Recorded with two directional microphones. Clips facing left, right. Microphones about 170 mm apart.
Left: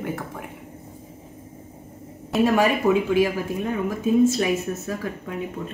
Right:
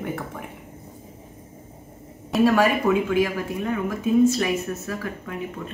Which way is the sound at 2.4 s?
15° left (ahead or behind).